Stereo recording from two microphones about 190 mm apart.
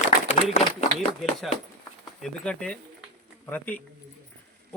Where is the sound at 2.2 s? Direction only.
5° left (ahead or behind).